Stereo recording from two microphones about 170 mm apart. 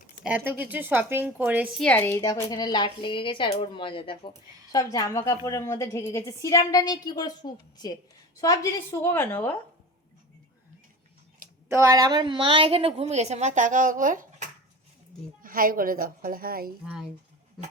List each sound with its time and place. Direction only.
0.3 s a woman's voice: 10° right (ahead or behind)
1.8 s a woman's voice: 10° left (ahead or behind)
2.2 s a woman's voice: 20° left (ahead or behind)
11.7 s a woman's voice: 20° right (ahead or behind); by 16.7 s 60° right (ahead or behind)
16.8 s speech: centre (ahead or behind)